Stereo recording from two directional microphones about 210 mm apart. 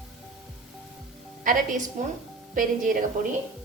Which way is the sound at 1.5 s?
40° right (ahead or behind).